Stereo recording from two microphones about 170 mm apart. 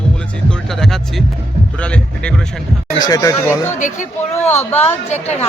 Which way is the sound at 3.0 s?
20° left (ahead or behind).